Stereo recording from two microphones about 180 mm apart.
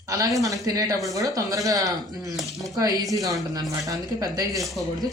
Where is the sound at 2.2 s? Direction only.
Centre (ahead or behind).